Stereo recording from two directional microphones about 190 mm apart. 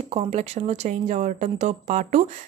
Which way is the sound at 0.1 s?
35° right (ahead or behind).